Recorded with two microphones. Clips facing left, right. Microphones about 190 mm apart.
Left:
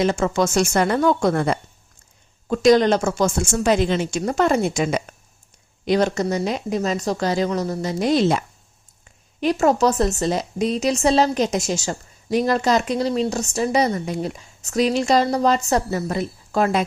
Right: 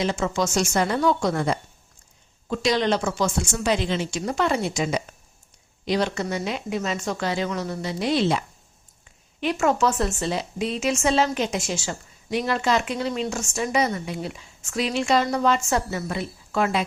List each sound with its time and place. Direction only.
0.0 s a woman's voice: 50° left (ahead or behind)
2.5 s a woman's voice: 45° left (ahead or behind)